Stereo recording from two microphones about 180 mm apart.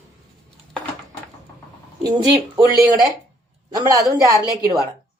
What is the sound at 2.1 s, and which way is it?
Speech, 25° right (ahead or behind).